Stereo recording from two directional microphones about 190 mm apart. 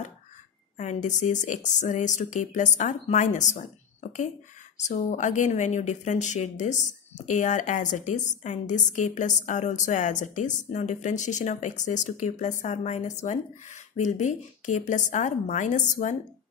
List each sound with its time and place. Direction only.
0.7 s speech: 40° left (ahead or behind)